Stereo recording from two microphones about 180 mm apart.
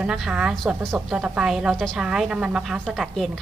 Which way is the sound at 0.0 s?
5° right (ahead or behind).